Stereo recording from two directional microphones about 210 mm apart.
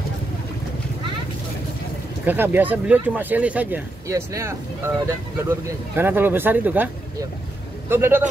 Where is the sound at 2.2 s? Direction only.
10° right (ahead or behind).